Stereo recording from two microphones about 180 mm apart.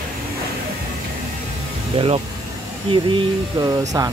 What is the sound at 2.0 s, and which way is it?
Speech, 35° right (ahead or behind).